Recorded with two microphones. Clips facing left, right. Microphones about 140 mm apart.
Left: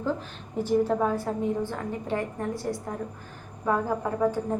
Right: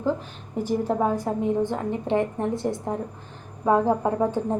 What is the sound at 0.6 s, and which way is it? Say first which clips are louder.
A woman's voice: even; 15° right (ahead or behind).